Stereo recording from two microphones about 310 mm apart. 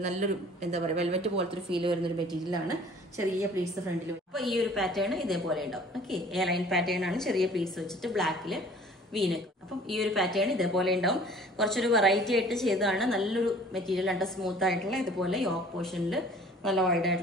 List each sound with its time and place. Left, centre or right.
0.0 s speech: right
4.3 s a woman's voice: centre